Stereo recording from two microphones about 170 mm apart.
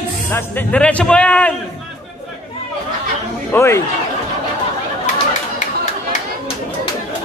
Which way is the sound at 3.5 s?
15° left (ahead or behind).